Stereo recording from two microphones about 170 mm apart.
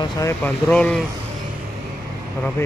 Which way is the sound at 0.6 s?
5° left (ahead or behind).